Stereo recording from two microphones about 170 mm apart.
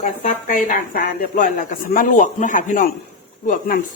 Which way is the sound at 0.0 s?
50° left (ahead or behind).